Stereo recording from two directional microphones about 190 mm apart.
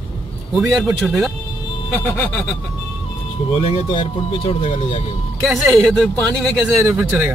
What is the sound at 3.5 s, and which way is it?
Speech, 30° left (ahead or behind).